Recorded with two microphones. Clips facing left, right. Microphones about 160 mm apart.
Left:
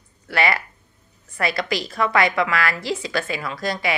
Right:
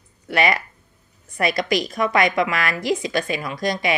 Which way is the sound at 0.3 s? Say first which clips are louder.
Right 2 dB; 20° right (ahead or behind).